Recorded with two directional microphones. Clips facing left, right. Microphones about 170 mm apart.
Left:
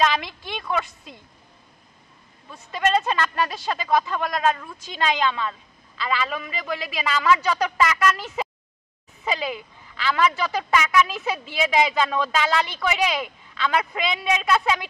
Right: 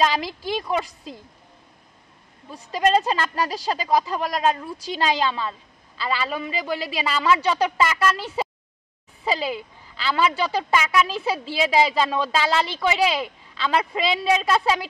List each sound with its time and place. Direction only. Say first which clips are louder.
0.0 s speech: right 1 dB; 35° right (ahead or behind)
2.5 s speech: right 2 dB; 35° right (ahead or behind)